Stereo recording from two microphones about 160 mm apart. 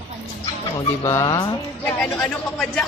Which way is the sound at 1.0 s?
20° left (ahead or behind).